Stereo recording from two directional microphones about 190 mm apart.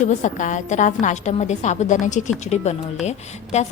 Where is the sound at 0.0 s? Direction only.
40° left (ahead or behind).